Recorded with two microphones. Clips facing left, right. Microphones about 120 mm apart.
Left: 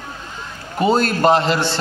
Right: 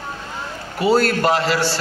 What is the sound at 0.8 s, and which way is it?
Speech, 20° left (ahead or behind).